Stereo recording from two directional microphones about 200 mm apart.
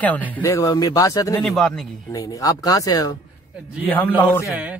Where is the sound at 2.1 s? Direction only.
15° left (ahead or behind).